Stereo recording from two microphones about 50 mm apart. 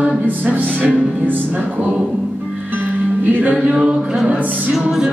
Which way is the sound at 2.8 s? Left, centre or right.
Right.